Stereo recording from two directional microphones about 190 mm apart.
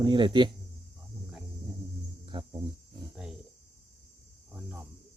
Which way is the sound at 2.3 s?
25° right (ahead or behind).